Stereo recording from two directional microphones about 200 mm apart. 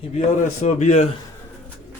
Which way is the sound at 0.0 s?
35° left (ahead or behind).